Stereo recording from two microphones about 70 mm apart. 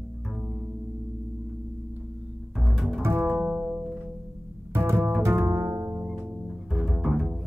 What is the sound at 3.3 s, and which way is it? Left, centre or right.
Bowed string instrument, right.